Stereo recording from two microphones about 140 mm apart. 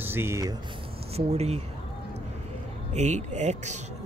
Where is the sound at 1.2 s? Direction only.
50° right (ahead or behind).